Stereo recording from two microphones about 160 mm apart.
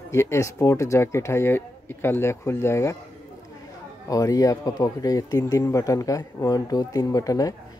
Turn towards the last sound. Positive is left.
turn(degrees=20)  # may be behind; listen again after turning